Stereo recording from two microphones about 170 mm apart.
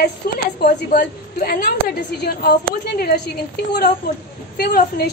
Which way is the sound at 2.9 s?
65° left (ahead or behind).